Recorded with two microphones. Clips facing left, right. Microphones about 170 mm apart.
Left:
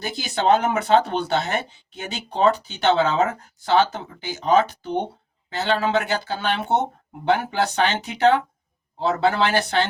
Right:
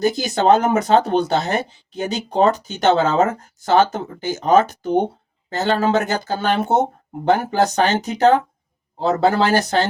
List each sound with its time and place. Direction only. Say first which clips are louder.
0.0 s speech: right 6 dB; 40° right (ahead or behind)